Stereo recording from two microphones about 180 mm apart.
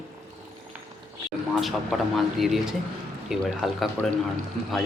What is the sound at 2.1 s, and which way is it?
Speech, centre (ahead or behind).